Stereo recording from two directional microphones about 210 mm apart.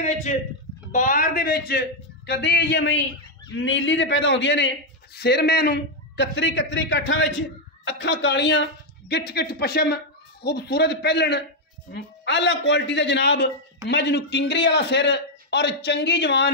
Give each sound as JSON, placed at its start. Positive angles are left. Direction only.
{"t": 0.0, "sound": "a man's voice", "side_deg": 35}